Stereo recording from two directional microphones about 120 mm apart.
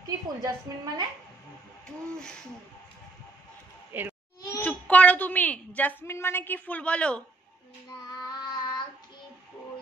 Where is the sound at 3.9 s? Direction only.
15° right (ahead or behind).